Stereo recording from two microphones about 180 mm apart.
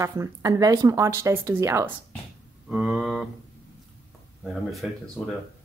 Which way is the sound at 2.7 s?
5° right (ahead or behind).